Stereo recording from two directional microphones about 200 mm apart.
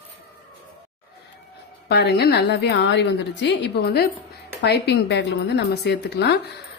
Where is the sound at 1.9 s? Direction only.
55° left (ahead or behind).